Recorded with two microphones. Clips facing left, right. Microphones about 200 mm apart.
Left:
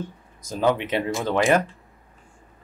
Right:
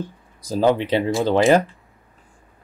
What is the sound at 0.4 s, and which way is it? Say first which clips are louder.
Speech: right 4 dB; 35° right (ahead or behind).